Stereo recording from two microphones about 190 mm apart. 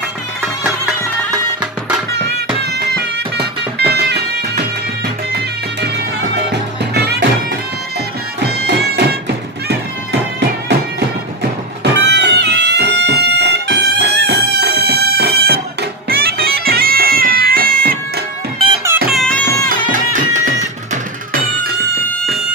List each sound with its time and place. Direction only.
2.1 s music: 60° right (ahead or behind)
6.9 s music: 60° right (ahead or behind)
8.4 s music: 60° right (ahead or behind)
11.8 s music: 65° right (ahead or behind)
16.1 s bagpipes: 55° right (ahead or behind)
19.1 s music: 5° left (ahead or behind)
19.7 s music: 45° right (ahead or behind)